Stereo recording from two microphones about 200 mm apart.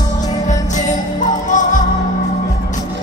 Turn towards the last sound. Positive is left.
turn(degrees=40)  # may be behind; listen again after turning